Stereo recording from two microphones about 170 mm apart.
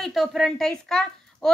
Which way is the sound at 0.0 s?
Centre (ahead or behind).